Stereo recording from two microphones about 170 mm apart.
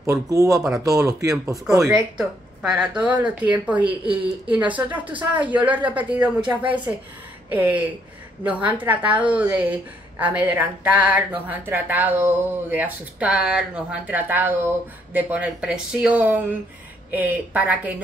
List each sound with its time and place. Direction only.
0.0 s speech: 20° right (ahead or behind)
2.1 s speech: 5° right (ahead or behind)